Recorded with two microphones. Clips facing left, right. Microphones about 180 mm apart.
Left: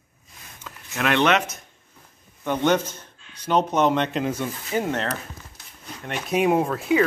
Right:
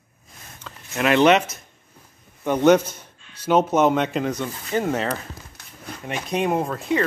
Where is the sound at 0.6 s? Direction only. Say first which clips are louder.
Right 3 dB; 5° right (ahead or behind).